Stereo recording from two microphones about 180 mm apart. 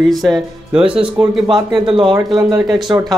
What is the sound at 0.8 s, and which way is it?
A man's voice, 30° right (ahead or behind).